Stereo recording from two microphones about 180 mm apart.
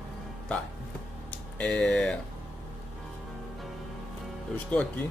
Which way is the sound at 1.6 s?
5° left (ahead or behind).